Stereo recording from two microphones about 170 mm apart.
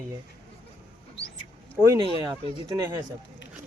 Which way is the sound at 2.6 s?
20° right (ahead or behind).